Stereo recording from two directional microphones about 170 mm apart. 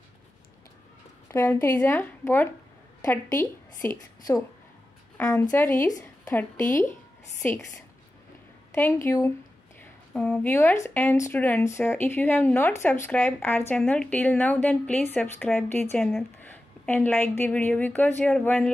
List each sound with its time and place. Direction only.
1.3 s a woman's voice: 15° left (ahead or behind)
5.1 s a woman's voice: 15° left (ahead or behind)
9.8 s a woman's voice: 5° left (ahead or behind)